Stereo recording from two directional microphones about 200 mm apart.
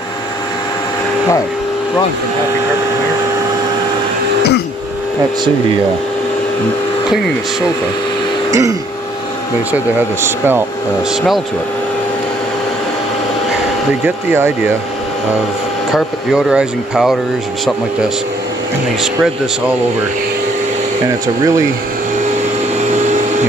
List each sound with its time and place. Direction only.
8.5 s throat clearing: 15° right (ahead or behind)
9.7 s speech: 10° right (ahead or behind)
14.0 s speech: 10° right (ahead or behind)
15.9 s speech: centre (ahead or behind)